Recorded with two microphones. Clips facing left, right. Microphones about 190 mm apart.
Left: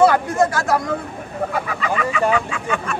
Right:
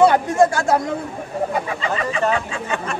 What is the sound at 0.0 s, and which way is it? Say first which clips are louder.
A man's voice: right 1 dB; 20° right (ahead or behind).